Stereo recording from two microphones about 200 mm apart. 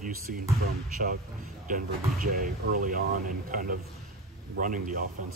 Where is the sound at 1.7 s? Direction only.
45° right (ahead or behind).